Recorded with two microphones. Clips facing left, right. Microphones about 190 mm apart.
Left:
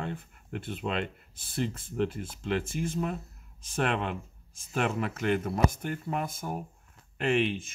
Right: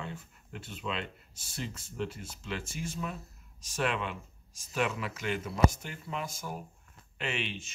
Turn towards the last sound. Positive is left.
turn(degrees=55)  # may be behind; listen again after turning